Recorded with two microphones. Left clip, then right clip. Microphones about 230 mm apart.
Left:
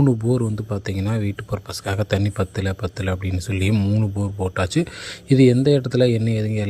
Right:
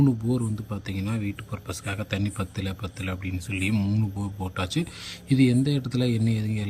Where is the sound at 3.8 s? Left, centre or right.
Centre.